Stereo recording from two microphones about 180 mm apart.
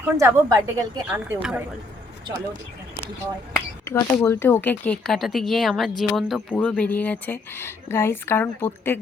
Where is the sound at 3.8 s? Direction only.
15° left (ahead or behind).